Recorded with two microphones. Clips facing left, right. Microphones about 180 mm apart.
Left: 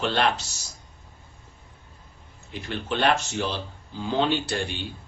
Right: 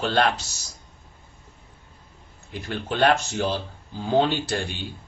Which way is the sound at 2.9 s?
40° right (ahead or behind).